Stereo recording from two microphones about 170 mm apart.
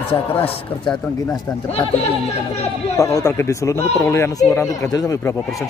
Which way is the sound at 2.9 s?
20° left (ahead or behind).